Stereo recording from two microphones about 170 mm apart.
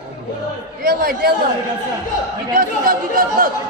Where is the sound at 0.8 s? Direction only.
60° right (ahead or behind).